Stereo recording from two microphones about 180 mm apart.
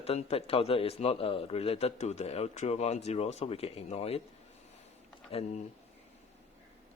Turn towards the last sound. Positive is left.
turn(degrees=35)  # may be behind; listen again after turning